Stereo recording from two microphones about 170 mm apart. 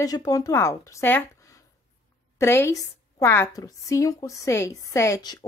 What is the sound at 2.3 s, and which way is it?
A woman's voice, 15° left (ahead or behind).